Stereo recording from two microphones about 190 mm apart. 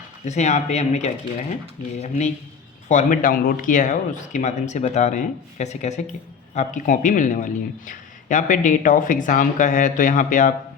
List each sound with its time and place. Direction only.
0.3 s a man's voice: 40° left (ahead or behind)